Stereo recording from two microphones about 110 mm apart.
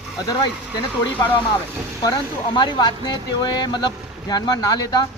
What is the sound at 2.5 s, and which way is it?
Speech, 45° left (ahead or behind).